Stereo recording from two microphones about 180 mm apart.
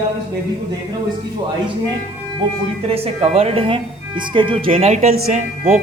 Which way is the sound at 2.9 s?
35° right (ahead or behind).